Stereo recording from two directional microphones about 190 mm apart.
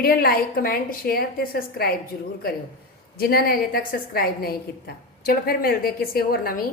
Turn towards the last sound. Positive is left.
turn(degrees=50)  # may be behind; listen again after turning